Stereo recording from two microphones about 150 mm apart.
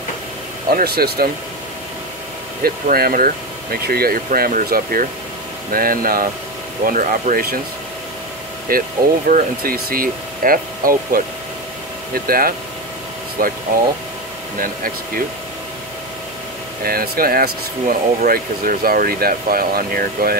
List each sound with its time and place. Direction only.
0.7 s speech: 90° right
2.6 s speech: 80° right
6.9 s speech: 60° right (ahead or behind)
8.7 s speech: 75° right (ahead or behind)
14.6 s speech: 70° right (ahead or behind)
16.8 s speech: 85° right